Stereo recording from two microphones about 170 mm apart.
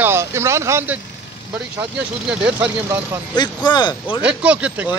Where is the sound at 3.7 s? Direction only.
25° left (ahead or behind).